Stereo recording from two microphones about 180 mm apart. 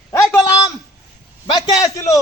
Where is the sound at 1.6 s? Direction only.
20° left (ahead or behind).